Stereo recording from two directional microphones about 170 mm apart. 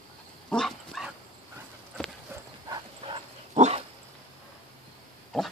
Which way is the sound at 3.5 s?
40° right (ahead or behind).